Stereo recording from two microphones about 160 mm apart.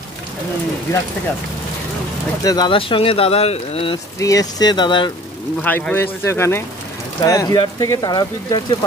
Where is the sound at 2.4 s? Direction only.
25° left (ahead or behind).